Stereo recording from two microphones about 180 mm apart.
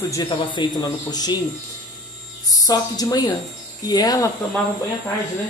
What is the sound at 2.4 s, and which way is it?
Speech, 20° left (ahead or behind).